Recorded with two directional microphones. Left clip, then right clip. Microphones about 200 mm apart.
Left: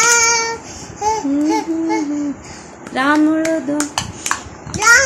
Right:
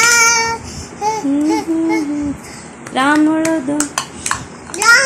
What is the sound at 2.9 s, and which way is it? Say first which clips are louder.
Speech: right 2 dB; 10° left (ahead or behind).